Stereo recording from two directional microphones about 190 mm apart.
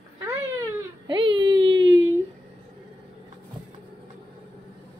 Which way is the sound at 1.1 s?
25° right (ahead or behind).